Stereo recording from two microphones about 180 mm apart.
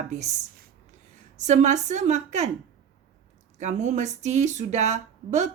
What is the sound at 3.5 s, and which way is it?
Speech, 40° right (ahead or behind).